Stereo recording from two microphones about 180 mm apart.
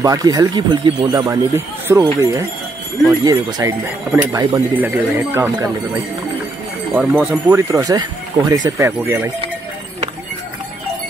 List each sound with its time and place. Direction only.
0.0 s speech: 20° right (ahead or behind)
6.9 s speech: 5° right (ahead or behind)